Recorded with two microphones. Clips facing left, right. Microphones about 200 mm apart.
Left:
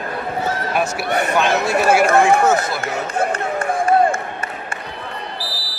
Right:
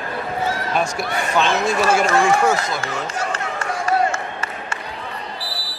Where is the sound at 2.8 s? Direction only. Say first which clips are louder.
Left 4 dB; 55° left (ahead or behind).